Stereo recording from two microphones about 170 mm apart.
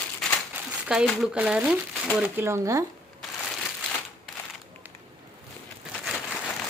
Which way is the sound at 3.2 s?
Centre (ahead or behind).